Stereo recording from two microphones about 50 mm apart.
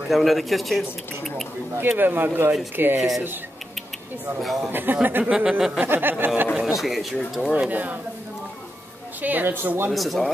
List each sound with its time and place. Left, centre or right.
0.1 s speech: centre
1.8 s speech: right
3.0 s speech: centre
4.4 s speech: centre
4.6 s a woman's voice: right
5.2 s speech: centre
5.9 s speech: right
6.5 s speech: centre
7.5 s a woman's voice: right
9.2 s a woman's voice: right
9.8 s speech: centre